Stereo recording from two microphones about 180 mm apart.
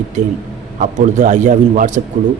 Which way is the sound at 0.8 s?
40° right (ahead or behind).